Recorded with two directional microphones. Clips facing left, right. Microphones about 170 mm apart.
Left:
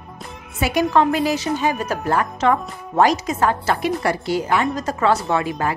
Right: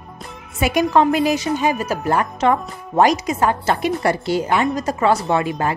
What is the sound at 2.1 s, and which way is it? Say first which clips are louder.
Speech: right 1 dB; 20° right (ahead or behind).